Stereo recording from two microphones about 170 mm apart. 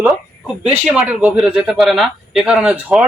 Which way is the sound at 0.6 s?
10° right (ahead or behind).